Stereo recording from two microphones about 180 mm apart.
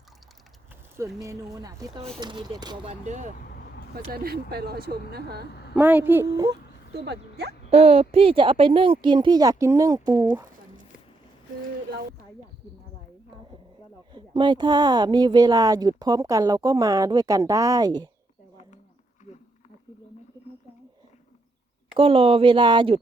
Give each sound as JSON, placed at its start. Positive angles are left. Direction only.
{"t": 0.9, "sound": "speech", "side_deg": -15}
{"t": 2.0, "sound": "speech", "side_deg": -30}
{"t": 2.9, "sound": "speech", "side_deg": -40}
{"t": 3.9, "sound": "speech", "side_deg": -55}
{"t": 5.7, "sound": "a woman's voice", "side_deg": -10}
{"t": 6.9, "sound": "speech", "side_deg": -65}
{"t": 7.7, "sound": "speech", "side_deg": -35}
{"t": 14.2, "sound": "speech", "side_deg": -25}
{"t": 21.9, "sound": "speech", "side_deg": -30}